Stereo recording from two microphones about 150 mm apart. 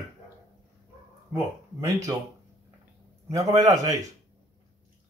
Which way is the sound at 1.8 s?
20° right (ahead or behind).